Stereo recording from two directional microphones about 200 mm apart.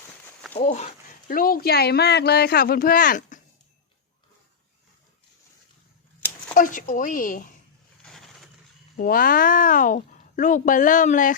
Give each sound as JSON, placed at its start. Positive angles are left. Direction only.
{"t": 0.5, "sound": "speech", "side_deg": 35}
{"t": 6.5, "sound": "speech", "side_deg": 40}
{"t": 9.0, "sound": "speech", "side_deg": 45}